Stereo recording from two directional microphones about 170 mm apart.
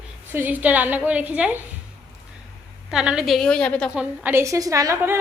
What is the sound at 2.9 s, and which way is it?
Speech, 5° right (ahead or behind).